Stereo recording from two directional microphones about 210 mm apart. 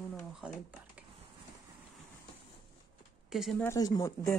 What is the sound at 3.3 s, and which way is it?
Speech, centre (ahead or behind).